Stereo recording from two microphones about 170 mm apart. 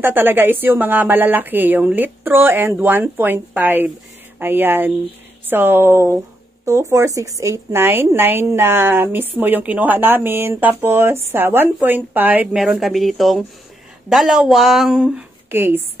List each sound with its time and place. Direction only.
0.0 s a woman's voice: 10° right (ahead or behind)